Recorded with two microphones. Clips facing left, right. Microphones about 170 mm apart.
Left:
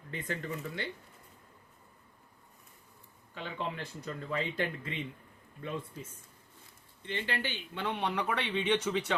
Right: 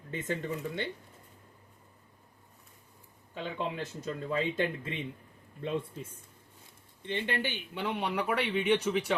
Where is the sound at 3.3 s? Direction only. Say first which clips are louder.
Right 3 dB; 20° right (ahead or behind).